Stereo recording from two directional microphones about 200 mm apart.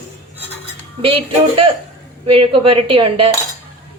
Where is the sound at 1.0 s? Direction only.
25° right (ahead or behind).